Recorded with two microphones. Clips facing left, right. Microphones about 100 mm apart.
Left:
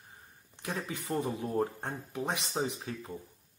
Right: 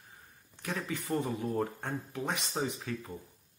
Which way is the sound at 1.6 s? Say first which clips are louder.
Left 1 dB; 20° left (ahead or behind).